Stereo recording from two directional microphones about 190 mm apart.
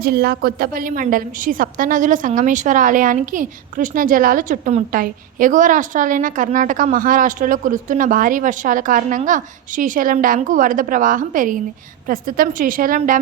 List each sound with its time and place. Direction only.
0.0 s a woman's voice: 55° right (ahead or behind)